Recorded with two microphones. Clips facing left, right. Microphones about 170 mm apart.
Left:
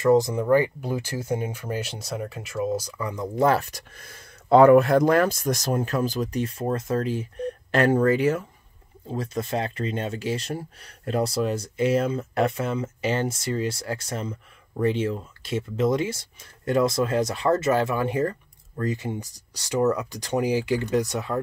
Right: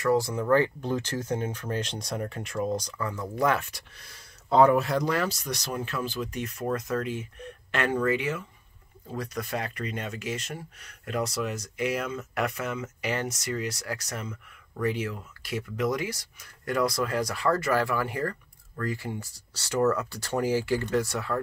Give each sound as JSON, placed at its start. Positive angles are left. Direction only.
{"t": 0.0, "sound": "speech", "side_deg": 20}
{"t": 3.4, "sound": "speech", "side_deg": 35}
{"t": 9.0, "sound": "speech", "side_deg": 25}